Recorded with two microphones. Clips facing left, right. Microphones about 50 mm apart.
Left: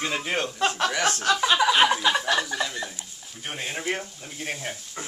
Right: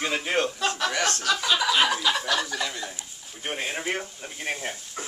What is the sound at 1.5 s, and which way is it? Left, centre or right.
Speech, left.